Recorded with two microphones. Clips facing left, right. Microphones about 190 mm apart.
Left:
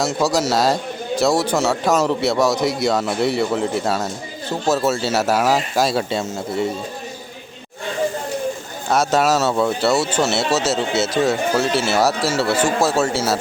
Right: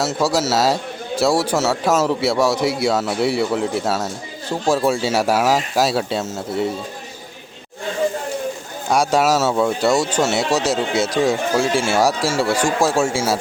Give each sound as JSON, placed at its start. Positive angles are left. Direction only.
{"t": 0.0, "sound": "a man's voice", "side_deg": -5}
{"t": 8.9, "sound": "a man's voice", "side_deg": -10}